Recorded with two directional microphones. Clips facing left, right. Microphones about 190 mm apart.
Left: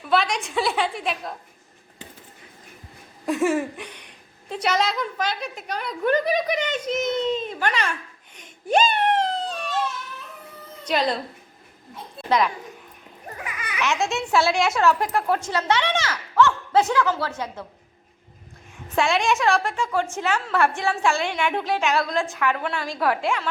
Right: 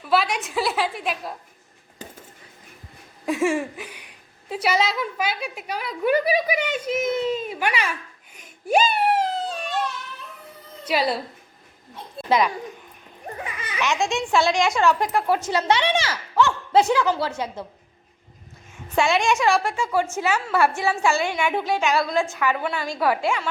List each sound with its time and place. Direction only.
0.0 s a woman's voice: 5° right (ahead or behind)
2.0 s a sound: 40° right (ahead or behind)
3.2 s a woman's voice: centre (ahead or behind)
10.8 s a woman's voice: 5° right (ahead or behind)
13.3 s children playing: 30° right (ahead or behind)
13.8 s a woman's voice: centre (ahead or behind)
15.5 s speech: 15° right (ahead or behind)
18.9 s a woman's voice: centre (ahead or behind)